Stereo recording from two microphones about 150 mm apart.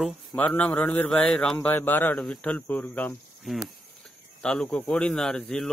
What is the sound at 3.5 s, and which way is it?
A man's voice, centre (ahead or behind).